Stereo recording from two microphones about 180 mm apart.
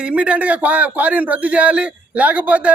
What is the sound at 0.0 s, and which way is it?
A man's voice, 5° right (ahead or behind).